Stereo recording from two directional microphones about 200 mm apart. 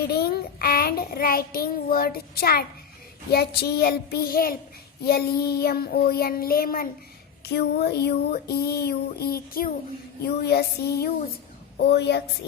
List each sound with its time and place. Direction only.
0.0 s child singing: 50° left (ahead or behind)
11.8 s a woman's voice: 55° left (ahead or behind)